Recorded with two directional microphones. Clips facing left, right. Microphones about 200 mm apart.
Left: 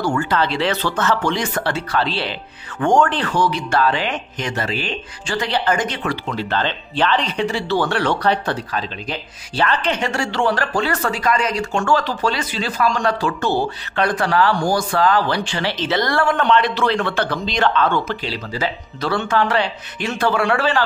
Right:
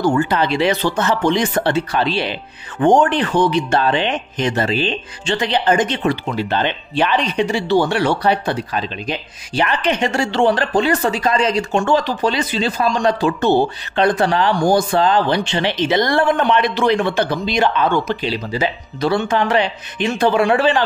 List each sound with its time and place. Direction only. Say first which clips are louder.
0.0 s speech: right 3 dB; 20° right (ahead or behind)